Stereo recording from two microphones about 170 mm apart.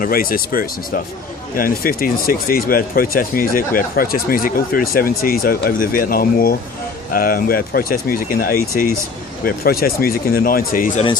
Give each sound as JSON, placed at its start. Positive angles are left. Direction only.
{"t": 0.0, "sound": "speech", "side_deg": 60}
{"t": 10.9, "sound": "speech", "side_deg": 30}